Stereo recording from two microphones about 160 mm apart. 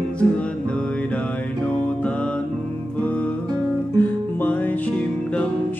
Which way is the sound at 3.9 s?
10° left (ahead or behind).